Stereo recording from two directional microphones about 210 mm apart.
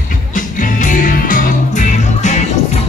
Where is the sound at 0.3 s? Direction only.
40° left (ahead or behind).